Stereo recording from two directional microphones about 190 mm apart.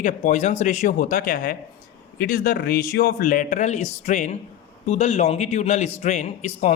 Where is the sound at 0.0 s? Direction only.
45° left (ahead or behind).